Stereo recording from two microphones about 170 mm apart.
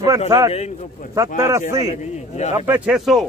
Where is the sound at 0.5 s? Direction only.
40° left (ahead or behind).